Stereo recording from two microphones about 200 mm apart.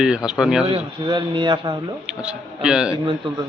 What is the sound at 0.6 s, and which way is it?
Speech, 25° right (ahead or behind).